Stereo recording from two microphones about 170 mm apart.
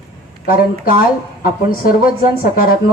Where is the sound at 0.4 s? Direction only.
55° left (ahead or behind).